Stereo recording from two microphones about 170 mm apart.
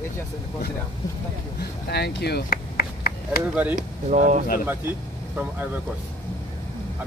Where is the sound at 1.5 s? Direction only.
70° left (ahead or behind).